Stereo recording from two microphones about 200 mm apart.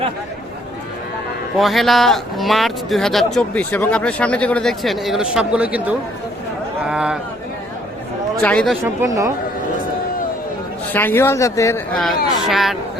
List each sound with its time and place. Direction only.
1.5 s speech: centre (ahead or behind)
8.4 s speech: 5° left (ahead or behind)
8.8 s speech: 15° right (ahead or behind)
10.9 s speech: 10° left (ahead or behind)
11.9 s speech: centre (ahead or behind)